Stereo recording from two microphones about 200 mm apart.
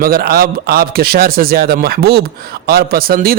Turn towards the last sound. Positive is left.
turn(degrees=-50)  # may be behind; listen again after turning